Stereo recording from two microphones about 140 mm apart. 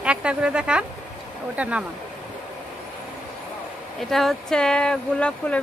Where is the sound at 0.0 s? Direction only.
5° right (ahead or behind).